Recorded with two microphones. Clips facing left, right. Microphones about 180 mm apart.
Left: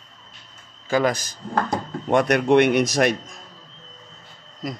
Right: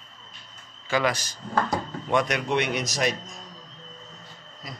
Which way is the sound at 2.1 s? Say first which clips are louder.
Left 8 dB; 55° left (ahead or behind).